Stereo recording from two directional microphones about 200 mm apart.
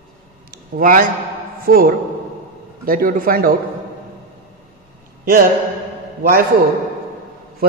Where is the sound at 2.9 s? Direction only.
45° right (ahead or behind).